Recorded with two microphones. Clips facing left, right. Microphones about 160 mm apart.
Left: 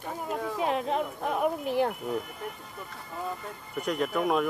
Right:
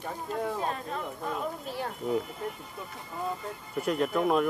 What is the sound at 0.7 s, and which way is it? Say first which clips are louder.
Speech: left 6 dB; 90° left.